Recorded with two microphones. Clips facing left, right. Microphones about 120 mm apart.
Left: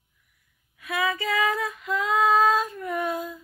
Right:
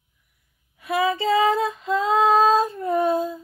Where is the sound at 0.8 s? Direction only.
30° right (ahead or behind).